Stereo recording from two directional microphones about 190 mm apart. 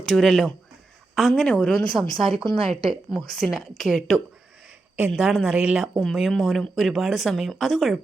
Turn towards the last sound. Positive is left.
turn(degrees=0)  # may be behind; listen again after turning